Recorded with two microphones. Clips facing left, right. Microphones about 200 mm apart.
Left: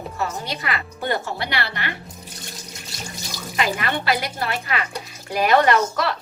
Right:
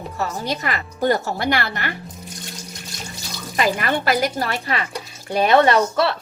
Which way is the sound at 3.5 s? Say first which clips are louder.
Right 3 dB; 40° right (ahead or behind).